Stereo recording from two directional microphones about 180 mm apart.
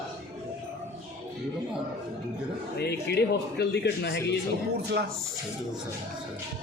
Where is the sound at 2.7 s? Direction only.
65° left (ahead or behind).